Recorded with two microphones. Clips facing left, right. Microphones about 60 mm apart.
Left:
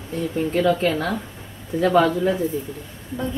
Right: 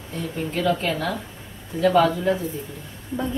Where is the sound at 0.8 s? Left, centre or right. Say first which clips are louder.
Left 3 dB; left.